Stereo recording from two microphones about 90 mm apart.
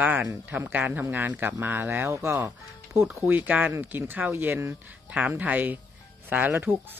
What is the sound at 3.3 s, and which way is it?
A man's voice, 20° right (ahead or behind).